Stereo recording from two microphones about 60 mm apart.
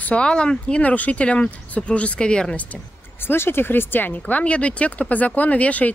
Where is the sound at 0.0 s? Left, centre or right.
Centre.